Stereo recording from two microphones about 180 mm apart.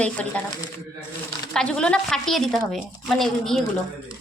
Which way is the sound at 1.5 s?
5° left (ahead or behind).